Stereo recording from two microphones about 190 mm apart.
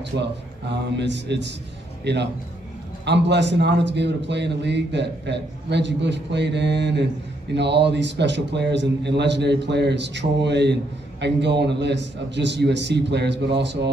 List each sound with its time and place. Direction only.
0.2 s a man's voice: 65° right (ahead or behind)